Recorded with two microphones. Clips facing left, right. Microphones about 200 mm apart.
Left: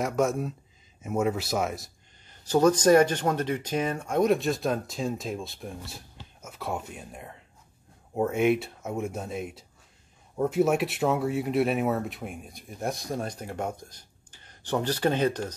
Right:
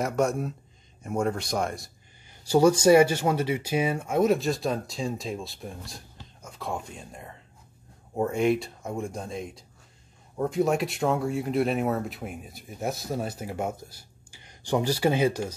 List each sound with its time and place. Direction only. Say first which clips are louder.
0.0 s speech: even; centre (ahead or behind)
2.2 s speech: right 1 dB; 10° right (ahead or behind)